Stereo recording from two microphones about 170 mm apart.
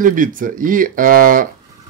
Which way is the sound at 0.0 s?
50° right (ahead or behind).